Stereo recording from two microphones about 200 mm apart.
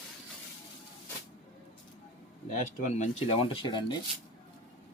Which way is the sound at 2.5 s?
35° left (ahead or behind).